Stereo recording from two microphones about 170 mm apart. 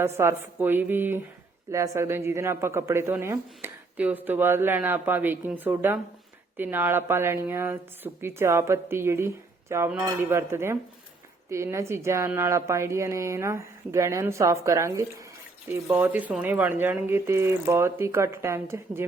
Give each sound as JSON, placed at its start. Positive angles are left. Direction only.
{"t": 0.0, "sound": "speech", "side_deg": -15}